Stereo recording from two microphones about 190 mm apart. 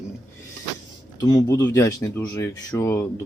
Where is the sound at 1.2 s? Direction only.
20° left (ahead or behind).